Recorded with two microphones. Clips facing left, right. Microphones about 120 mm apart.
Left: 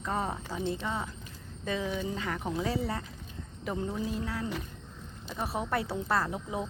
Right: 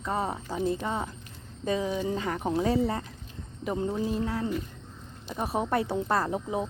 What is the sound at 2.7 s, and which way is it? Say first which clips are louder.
Speech: right 6 dB; 40° right (ahead or behind).